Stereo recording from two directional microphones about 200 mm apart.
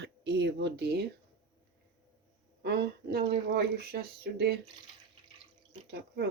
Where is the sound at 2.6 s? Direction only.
55° right (ahead or behind).